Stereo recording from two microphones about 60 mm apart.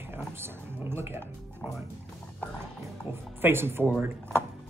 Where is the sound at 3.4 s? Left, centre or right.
Right.